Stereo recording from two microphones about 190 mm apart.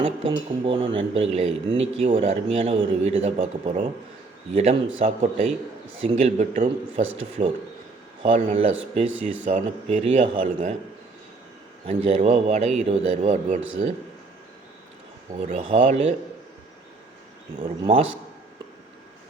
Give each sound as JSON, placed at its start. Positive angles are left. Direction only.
{"t": 0.0, "sound": "speech", "side_deg": -30}
{"t": 8.2, "sound": "speech", "side_deg": -30}
{"t": 11.9, "sound": "speech", "side_deg": -35}
{"t": 15.4, "sound": "speech", "side_deg": -30}
{"t": 17.6, "sound": "speech", "side_deg": -30}